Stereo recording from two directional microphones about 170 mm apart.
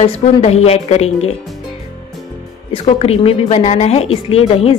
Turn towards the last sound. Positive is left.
turn(degrees=35)  # may be behind; listen again after turning